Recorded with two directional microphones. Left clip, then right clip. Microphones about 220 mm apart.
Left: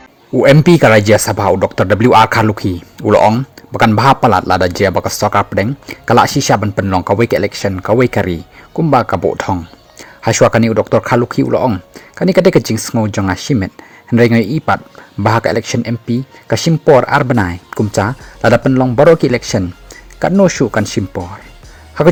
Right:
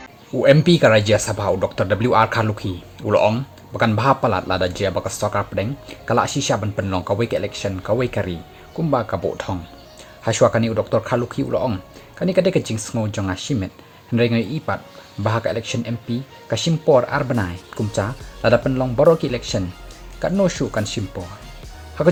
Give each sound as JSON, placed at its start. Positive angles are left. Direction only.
{"t": 0.3, "sound": "speech", "side_deg": 40}